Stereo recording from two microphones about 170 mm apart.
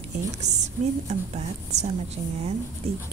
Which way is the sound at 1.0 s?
40° right (ahead or behind).